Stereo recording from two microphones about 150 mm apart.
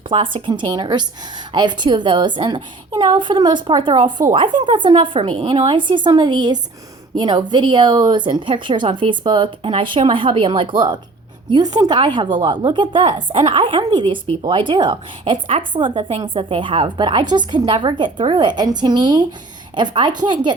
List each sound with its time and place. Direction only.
0.1 s a woman's voice: 35° right (ahead or behind)